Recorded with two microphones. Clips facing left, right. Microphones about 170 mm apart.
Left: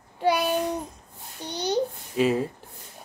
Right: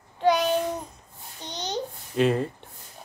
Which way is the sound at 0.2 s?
10° left (ahead or behind).